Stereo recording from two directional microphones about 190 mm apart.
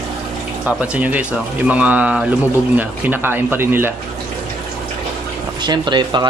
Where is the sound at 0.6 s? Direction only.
5° right (ahead or behind).